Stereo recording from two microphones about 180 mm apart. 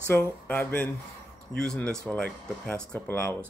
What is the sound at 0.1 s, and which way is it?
Speech, 10° left (ahead or behind).